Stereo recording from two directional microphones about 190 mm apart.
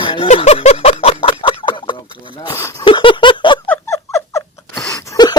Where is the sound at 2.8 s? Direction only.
25° left (ahead or behind).